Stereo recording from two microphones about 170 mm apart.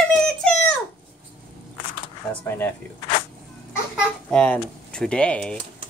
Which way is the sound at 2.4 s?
10° left (ahead or behind).